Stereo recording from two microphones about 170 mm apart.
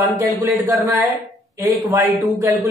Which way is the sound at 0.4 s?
15° right (ahead or behind).